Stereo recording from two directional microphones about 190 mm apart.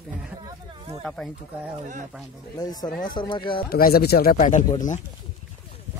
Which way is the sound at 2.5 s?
20° left (ahead or behind).